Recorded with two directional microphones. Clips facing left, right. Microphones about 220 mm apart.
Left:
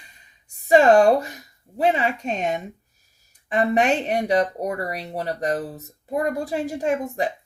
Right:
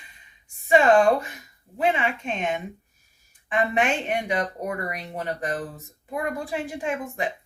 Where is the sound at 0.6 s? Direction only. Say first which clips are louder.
Left 3 dB; 40° left (ahead or behind).